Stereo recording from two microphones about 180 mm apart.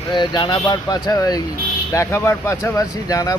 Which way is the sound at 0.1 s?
25° left (ahead or behind).